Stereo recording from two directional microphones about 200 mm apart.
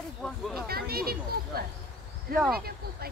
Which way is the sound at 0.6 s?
50° right (ahead or behind).